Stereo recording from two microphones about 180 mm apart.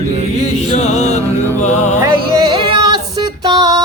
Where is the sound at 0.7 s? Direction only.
35° left (ahead or behind).